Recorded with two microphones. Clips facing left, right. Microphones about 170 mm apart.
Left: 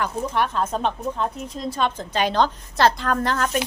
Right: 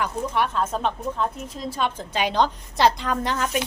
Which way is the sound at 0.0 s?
5° right (ahead or behind).